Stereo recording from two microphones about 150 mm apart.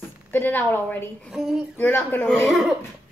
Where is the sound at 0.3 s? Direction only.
15° left (ahead or behind).